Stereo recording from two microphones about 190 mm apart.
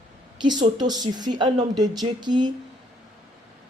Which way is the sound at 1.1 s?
20° right (ahead or behind).